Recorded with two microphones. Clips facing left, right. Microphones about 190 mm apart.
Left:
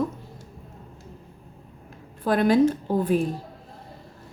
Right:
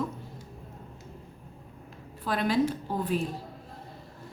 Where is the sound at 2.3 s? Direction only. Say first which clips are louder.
Left 7 dB; 50° left (ahead or behind).